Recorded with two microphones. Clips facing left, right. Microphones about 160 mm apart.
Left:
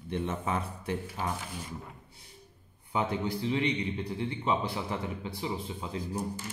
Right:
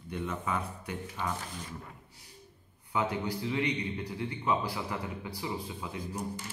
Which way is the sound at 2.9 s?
25° left (ahead or behind).